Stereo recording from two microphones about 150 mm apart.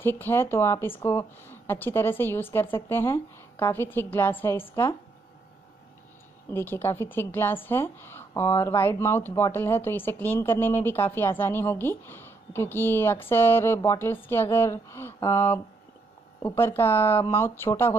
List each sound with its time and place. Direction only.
0.0 s speech: 15° left (ahead or behind)
6.5 s speech: 15° left (ahead or behind)